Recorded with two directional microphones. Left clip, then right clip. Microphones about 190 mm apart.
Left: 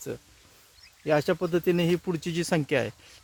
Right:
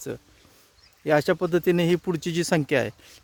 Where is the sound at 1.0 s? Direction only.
35° right (ahead or behind).